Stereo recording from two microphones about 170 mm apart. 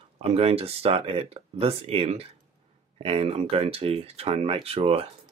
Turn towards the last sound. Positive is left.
turn(degrees=-35)  # may be behind; listen again after turning